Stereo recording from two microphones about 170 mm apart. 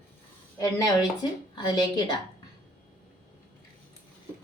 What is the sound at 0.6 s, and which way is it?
A woman's voice, 20° left (ahead or behind).